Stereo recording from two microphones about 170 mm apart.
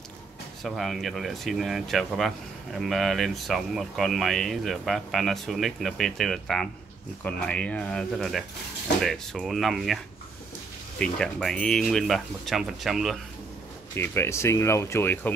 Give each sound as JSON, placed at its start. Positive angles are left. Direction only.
{"t": 0.7, "sound": "speech", "side_deg": 0}
{"t": 11.0, "sound": "speech", "side_deg": 5}
{"t": 13.9, "sound": "speech", "side_deg": 15}